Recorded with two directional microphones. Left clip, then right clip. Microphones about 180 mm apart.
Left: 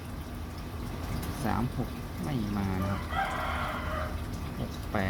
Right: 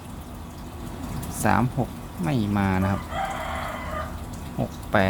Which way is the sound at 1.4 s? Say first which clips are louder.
Right 11 dB; 50° right (ahead or behind).